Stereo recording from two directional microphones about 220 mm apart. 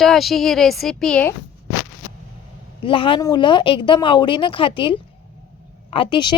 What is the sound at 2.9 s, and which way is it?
Speech, 25° left (ahead or behind).